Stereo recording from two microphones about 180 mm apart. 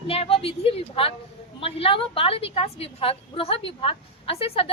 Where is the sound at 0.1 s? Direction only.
30° left (ahead or behind).